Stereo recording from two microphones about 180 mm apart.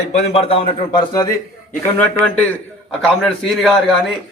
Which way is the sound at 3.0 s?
Centre (ahead or behind).